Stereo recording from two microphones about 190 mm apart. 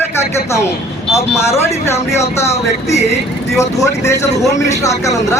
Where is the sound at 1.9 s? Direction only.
35° left (ahead or behind).